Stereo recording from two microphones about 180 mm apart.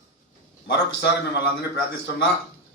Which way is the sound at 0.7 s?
70° left (ahead or behind).